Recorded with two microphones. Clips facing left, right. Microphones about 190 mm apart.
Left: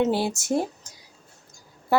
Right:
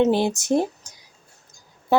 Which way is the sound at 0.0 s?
20° right (ahead or behind).